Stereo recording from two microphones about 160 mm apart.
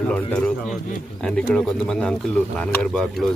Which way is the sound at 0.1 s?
10° left (ahead or behind).